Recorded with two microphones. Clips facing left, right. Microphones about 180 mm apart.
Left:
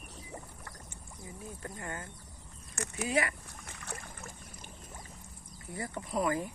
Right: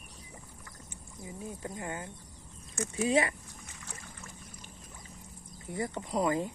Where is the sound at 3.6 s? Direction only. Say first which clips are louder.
Left 4 dB; 60° left (ahead or behind).